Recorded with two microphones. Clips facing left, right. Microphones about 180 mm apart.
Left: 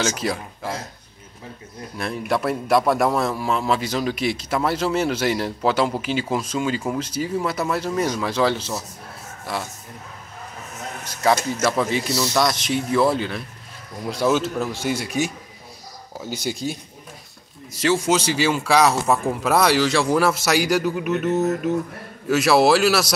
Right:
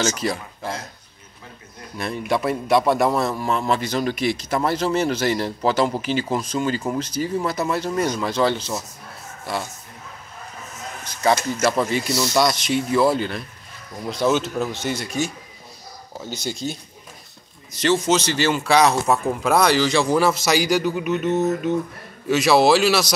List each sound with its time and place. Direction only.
0.0 s speech: centre (ahead or behind)
2.0 s a man's voice: centre (ahead or behind)
11.6 s a man's voice: centre (ahead or behind)
16.2 s speech: 10° left (ahead or behind)
17.7 s a man's voice: 5° left (ahead or behind)
21.3 s mantra: 25° right (ahead or behind)
22.3 s a man's voice: 5° left (ahead or behind)